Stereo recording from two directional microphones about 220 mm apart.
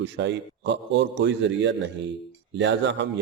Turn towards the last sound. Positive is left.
turn(degrees=-55)  # may be behind; listen again after turning